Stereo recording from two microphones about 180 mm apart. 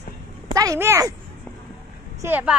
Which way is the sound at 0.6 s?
15° right (ahead or behind).